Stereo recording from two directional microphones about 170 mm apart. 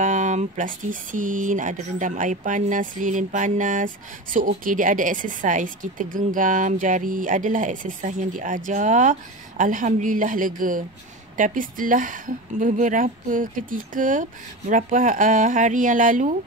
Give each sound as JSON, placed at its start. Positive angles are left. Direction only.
{"t": 0.0, "sound": "speech", "side_deg": -45}